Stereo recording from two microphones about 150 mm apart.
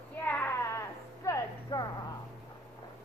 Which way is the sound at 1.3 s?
20° left (ahead or behind).